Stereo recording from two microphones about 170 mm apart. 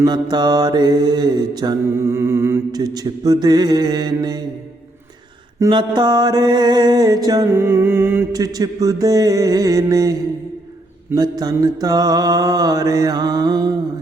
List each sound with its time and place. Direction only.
0.0 s mantra: 25° right (ahead or behind)
5.5 s mantra: 25° right (ahead or behind)